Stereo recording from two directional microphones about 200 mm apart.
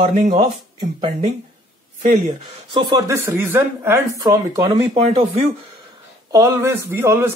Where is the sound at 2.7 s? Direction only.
25° right (ahead or behind).